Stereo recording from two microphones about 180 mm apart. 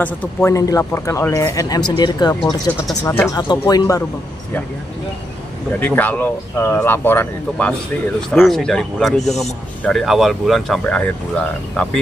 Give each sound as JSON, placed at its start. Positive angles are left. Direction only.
{"t": 0.0, "sound": "speech", "side_deg": 10}
{"t": 5.7, "sound": "speech", "side_deg": 10}